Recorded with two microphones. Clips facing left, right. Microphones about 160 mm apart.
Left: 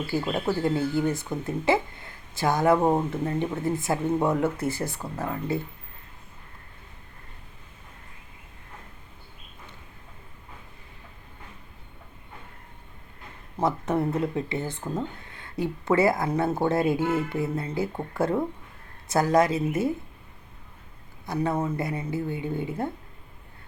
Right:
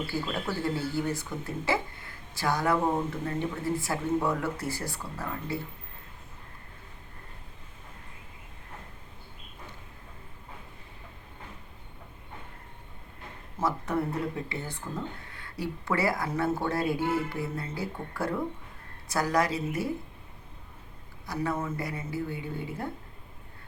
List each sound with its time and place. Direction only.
0.1 s speech: 25° left (ahead or behind)
13.6 s speech: 20° left (ahead or behind)
21.3 s speech: 25° left (ahead or behind)